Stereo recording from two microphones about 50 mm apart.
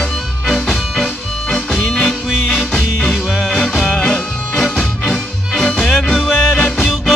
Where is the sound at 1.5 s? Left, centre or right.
Centre.